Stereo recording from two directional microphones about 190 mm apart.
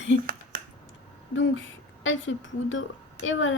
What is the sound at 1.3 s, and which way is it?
A woman's voice, 85° left.